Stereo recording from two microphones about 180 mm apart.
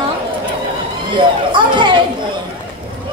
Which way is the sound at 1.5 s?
25° right (ahead or behind).